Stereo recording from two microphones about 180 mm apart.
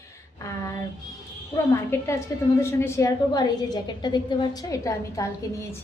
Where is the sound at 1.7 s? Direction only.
15° left (ahead or behind).